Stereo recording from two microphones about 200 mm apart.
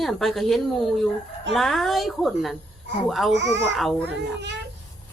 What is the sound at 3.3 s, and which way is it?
Speech, 60° right (ahead or behind).